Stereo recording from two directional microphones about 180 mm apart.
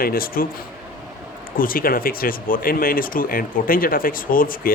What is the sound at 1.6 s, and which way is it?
Speech, 50° left (ahead or behind).